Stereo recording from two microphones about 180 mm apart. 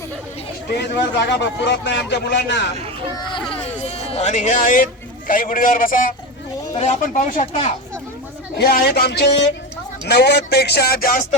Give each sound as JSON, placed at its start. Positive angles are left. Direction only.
{"t": 0.8, "sound": "speech", "side_deg": 70}
{"t": 3.5, "sound": "a man's voice", "side_deg": 35}
{"t": 6.7, "sound": "speech", "side_deg": 40}
{"t": 8.5, "sound": "speech", "side_deg": 60}